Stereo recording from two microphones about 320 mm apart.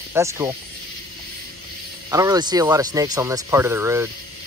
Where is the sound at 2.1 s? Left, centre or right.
Centre.